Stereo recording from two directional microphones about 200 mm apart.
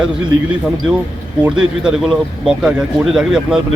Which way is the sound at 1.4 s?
5° right (ahead or behind).